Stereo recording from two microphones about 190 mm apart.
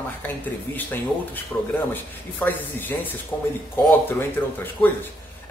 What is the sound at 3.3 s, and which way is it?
Speech, 20° left (ahead or behind).